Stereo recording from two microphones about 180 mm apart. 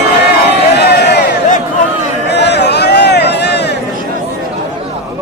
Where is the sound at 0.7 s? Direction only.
65° left (ahead or behind).